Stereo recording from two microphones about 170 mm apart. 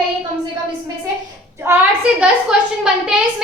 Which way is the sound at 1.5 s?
15° right (ahead or behind).